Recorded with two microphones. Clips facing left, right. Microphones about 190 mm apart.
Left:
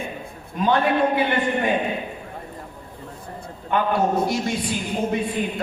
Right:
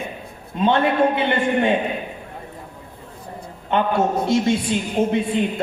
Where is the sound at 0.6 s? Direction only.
25° right (ahead or behind).